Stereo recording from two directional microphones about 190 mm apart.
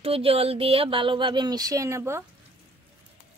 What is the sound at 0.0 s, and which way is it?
Speech, 30° right (ahead or behind).